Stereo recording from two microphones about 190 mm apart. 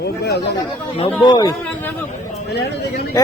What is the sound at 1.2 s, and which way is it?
Speech, 20° left (ahead or behind).